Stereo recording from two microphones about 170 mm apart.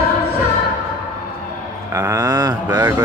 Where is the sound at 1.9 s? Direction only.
15° right (ahead or behind).